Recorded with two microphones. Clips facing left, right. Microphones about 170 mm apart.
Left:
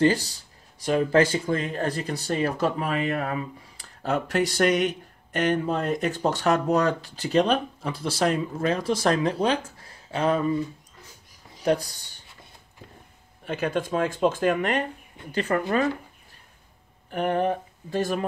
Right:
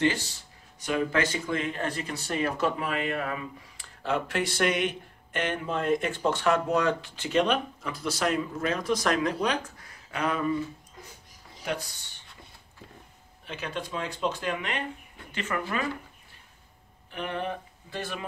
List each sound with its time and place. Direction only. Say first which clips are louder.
0.0 s speech: left 5 dB; 35° left (ahead or behind)
11.6 s speech: left 9 dB; 35° left (ahead or behind)
13.5 s speech: left 9 dB; 50° left (ahead or behind)
17.1 s speech: left 8 dB; 45° left (ahead or behind)